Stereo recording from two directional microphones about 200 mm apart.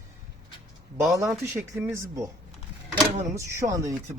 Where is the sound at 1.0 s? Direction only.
Centre (ahead or behind).